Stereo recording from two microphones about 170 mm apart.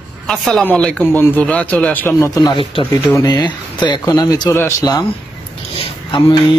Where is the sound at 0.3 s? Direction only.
5° left (ahead or behind); by 2.9 s 30° left (ahead or behind).